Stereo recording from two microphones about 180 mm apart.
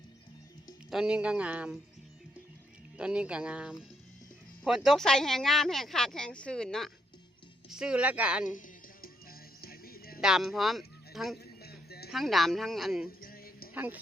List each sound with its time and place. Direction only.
0.9 s speech: 5° right (ahead or behind)
3.0 s a woman's voice: 5° right (ahead or behind)
8.4 s music: 45° left (ahead or behind)
10.2 s speech: 5° right (ahead or behind)
11.6 s music: 60° left (ahead or behind)
12.1 s speech: centre (ahead or behind)
13.1 s music: 55° left (ahead or behind)
13.7 s a woman's voice: 10° right (ahead or behind)